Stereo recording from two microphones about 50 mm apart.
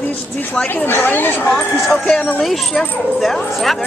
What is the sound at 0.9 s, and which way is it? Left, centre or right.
Speech, left.